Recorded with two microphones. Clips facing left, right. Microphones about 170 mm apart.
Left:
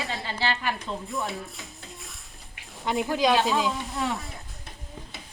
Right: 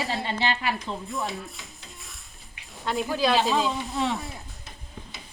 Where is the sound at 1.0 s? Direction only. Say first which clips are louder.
Even; centre (ahead or behind).